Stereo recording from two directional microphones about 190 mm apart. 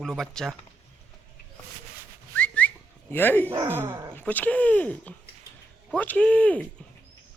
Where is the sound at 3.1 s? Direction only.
10° left (ahead or behind).